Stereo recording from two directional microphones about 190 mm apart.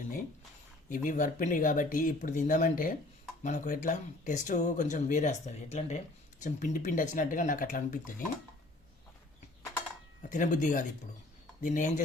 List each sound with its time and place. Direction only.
0.9 s speech: 45° left (ahead or behind)
10.2 s speech: 40° left (ahead or behind)